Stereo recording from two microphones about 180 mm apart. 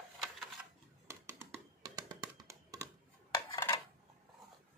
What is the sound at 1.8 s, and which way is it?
Music, 20° right (ahead or behind).